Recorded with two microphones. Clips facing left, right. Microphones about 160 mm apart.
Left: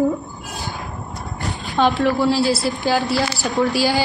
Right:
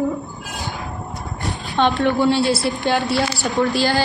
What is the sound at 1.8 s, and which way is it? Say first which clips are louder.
A woman's voice: even; centre (ahead or behind).